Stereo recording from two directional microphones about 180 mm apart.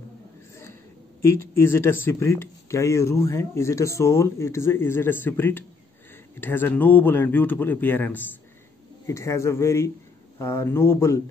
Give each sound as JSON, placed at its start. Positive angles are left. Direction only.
{"t": 1.2, "sound": "speech", "side_deg": 15}